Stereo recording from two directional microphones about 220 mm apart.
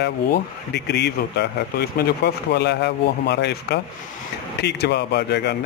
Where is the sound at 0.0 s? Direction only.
50° left (ahead or behind).